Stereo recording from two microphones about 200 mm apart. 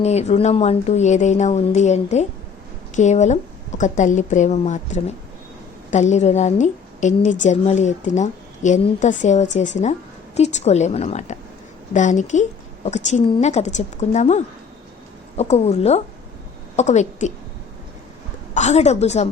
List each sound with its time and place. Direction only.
0.0 s a woman's voice: 35° left (ahead or behind)
18.5 s a woman's voice: 35° left (ahead or behind)